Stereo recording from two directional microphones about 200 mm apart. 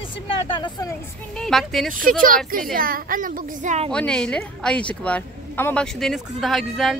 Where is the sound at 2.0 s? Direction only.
45° right (ahead or behind).